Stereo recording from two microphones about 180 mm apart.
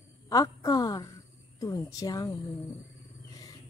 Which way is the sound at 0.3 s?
20° left (ahead or behind).